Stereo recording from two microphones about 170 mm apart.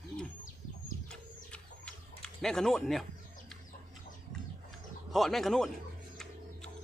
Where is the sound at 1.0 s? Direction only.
5° left (ahead or behind).